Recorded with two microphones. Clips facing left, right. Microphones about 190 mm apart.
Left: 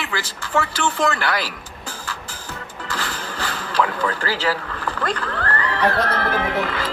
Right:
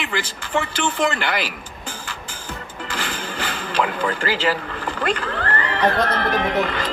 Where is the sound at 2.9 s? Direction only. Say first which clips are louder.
Right 1 dB; 20° right (ahead or behind).